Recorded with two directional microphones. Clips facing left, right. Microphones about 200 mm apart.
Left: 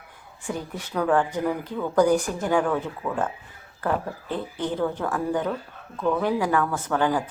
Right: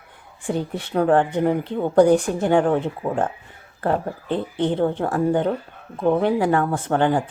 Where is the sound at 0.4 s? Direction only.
30° right (ahead or behind).